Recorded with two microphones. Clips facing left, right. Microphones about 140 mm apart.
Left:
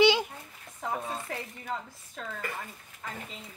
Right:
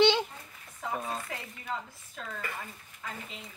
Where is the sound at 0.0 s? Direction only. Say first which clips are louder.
Left 1 dB; 5° left (ahead or behind).